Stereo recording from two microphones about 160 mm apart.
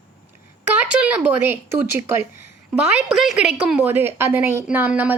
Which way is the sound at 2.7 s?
Centre (ahead or behind).